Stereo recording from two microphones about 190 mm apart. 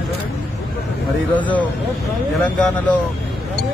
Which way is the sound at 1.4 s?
10° left (ahead or behind).